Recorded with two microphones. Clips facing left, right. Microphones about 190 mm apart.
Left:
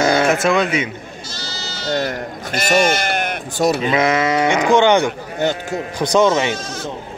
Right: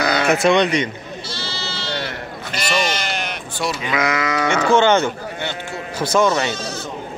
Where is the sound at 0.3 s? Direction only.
Centre (ahead or behind).